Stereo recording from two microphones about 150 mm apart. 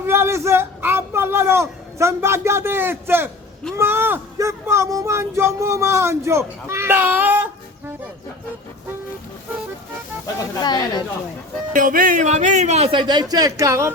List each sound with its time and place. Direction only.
0.0 s a sound: 15° right (ahead or behind)
3.8 s speech: 15° right (ahead or behind)
10.6 s speech: 30° left (ahead or behind)
11.7 s speech: 65° right (ahead or behind)
12.9 s speech: 30° right (ahead or behind)